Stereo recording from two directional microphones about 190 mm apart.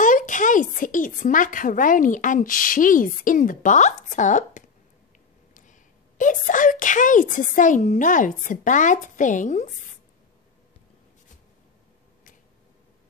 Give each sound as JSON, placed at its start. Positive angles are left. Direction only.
{"t": 0.0, "sound": "a woman's voice", "side_deg": 40}